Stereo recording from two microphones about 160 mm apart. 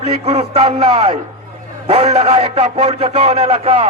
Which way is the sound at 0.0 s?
40° right (ahead or behind).